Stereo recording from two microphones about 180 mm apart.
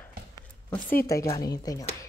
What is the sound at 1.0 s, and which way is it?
Speech, 20° left (ahead or behind).